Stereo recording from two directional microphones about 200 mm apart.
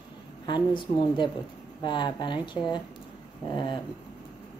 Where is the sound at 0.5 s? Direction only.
25° left (ahead or behind).